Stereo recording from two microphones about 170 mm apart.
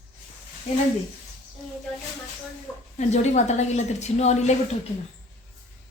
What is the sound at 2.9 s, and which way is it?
A woman's voice, 45° left (ahead or behind).